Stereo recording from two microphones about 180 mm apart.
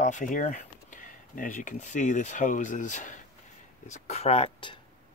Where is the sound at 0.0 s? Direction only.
45° left (ahead or behind).